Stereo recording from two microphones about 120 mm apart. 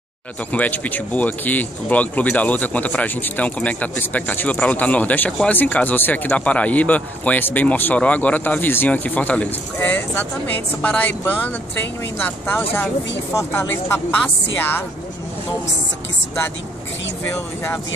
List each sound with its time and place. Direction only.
0.5 s speech: 15° left (ahead or behind)